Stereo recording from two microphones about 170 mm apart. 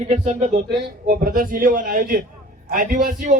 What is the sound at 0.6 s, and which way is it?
A man's voice, 60° right (ahead or behind).